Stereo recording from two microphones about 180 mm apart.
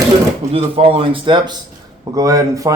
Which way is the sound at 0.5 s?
30° right (ahead or behind).